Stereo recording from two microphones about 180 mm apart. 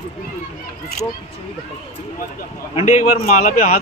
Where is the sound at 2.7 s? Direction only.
40° left (ahead or behind).